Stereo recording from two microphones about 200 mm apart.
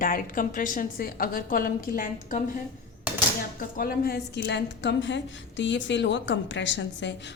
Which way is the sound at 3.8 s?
50° left (ahead or behind).